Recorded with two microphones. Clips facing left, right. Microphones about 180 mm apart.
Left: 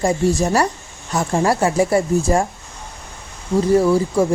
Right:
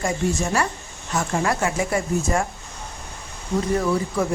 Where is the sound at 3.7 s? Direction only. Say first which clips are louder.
Left 8 dB; 30° left (ahead or behind).